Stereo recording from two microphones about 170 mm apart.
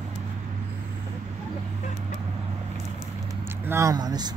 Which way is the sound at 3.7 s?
20° right (ahead or behind).